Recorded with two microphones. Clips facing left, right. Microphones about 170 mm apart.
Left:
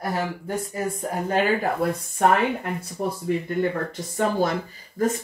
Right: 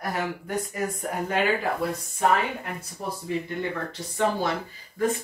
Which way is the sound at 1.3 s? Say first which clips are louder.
Left 3 dB; 50° left (ahead or behind).